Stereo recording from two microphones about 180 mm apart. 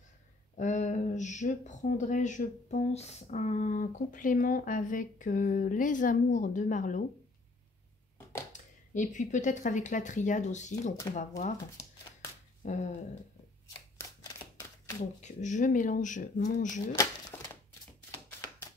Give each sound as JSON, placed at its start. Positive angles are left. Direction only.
{"t": 0.6, "sound": "speech", "side_deg": 40}
{"t": 8.5, "sound": "speech", "side_deg": 45}
{"t": 12.6, "sound": "speech", "side_deg": 40}
{"t": 13.9, "sound": "a sound", "side_deg": 15}
{"t": 15.0, "sound": "speech", "side_deg": 40}